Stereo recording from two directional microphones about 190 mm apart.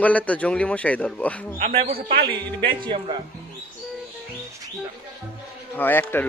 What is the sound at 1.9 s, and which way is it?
Speech, 50° right (ahead or behind).